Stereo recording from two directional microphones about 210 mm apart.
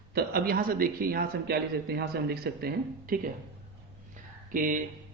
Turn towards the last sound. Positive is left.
turn(degrees=-40)  # may be behind; listen again after turning